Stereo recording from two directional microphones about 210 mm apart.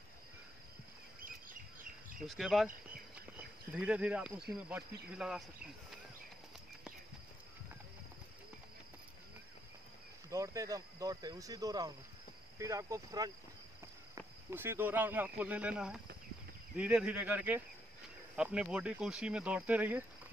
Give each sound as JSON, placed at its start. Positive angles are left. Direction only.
{"t": 1.2, "sound": "bird", "side_deg": -40}
{"t": 2.2, "sound": "speech", "side_deg": 0}
{"t": 10.3, "sound": "speech", "side_deg": -15}